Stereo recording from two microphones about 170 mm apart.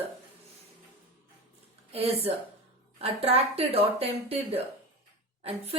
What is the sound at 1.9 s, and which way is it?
A woman's voice, 35° right (ahead or behind).